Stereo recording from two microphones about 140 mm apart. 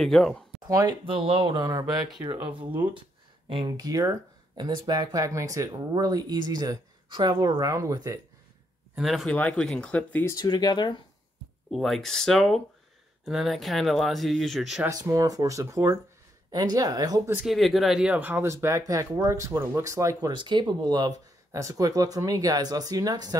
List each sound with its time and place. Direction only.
0.0 s speech: centre (ahead or behind)
0.6 s speech: 25° right (ahead or behind)
1.0 s speech: 40° right (ahead or behind)
2.4 s speech: 40° right (ahead or behind)
8.9 s speech: centre (ahead or behind)
10.3 s speech: 30° left (ahead or behind)
11.7 s speech: centre (ahead or behind)
14.9 s speech: 25° right (ahead or behind)
17.5 s speech: centre (ahead or behind); by 23.3 s 25° right (ahead or behind)